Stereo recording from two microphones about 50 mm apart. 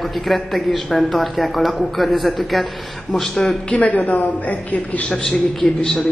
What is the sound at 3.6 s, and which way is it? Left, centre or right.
A woman's voice, left.